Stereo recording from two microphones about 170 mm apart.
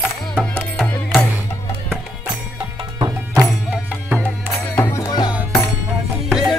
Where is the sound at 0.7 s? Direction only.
Centre (ahead or behind).